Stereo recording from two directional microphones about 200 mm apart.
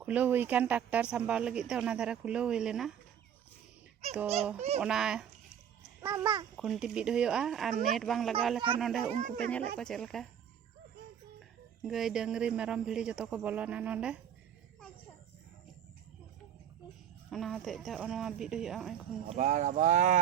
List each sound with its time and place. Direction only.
0.0 s speech: 5° right (ahead or behind)
4.8 s a child's voice: 5° right (ahead or behind)
6.6 s speech: centre (ahead or behind)
11.8 s speech: centre (ahead or behind)
17.2 s speech: centre (ahead or behind)
19.3 s speech: 35° right (ahead or behind)